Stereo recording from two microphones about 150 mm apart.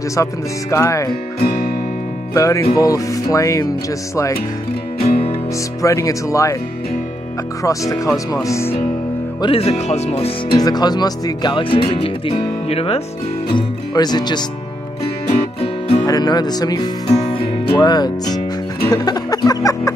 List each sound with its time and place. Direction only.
0.1 s speech: 20° left (ahead or behind)
1.4 s music: 90° left
2.3 s speech: 20° left (ahead or behind)
5.8 s speech: 20° left (ahead or behind)
7.6 s speech: 20° left (ahead or behind)
9.4 s speech: 40° left (ahead or behind)
10.5 s speech: 25° left (ahead or behind)
13.6 s speech: 30° left (ahead or behind)
15.2 s music: 40° left (ahead or behind)
16.1 s speech: 25° left (ahead or behind)